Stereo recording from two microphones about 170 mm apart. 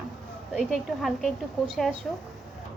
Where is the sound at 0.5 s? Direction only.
Centre (ahead or behind).